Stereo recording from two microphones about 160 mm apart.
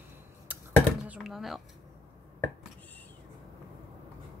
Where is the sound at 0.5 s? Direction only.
10° right (ahead or behind).